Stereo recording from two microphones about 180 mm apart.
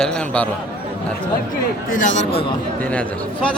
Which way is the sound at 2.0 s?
40° left (ahead or behind).